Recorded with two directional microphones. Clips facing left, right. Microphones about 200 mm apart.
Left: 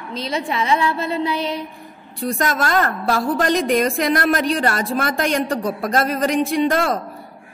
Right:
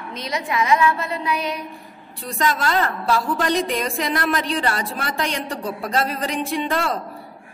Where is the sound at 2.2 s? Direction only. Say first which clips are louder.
Left 2 dB; 45° left (ahead or behind).